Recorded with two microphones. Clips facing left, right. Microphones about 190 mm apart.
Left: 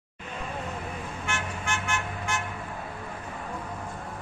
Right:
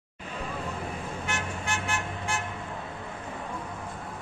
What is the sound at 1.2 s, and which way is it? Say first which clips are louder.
Vehicle: left 1 dB; 35° right (ahead or behind).